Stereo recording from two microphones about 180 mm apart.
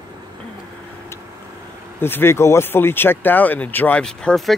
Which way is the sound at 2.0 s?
10° left (ahead or behind).